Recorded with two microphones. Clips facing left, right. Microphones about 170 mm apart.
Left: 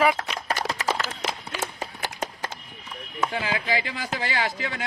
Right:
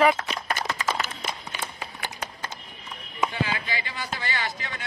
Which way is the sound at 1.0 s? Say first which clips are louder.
Left 2 dB; 85° left.